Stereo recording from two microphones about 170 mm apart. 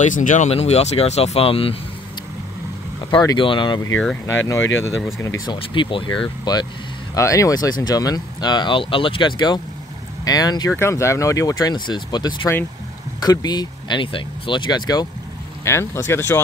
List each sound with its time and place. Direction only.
0.0 s speech: 50° left (ahead or behind)
3.1 s speech: 25° left (ahead or behind)
5.2 s speech: 20° left (ahead or behind)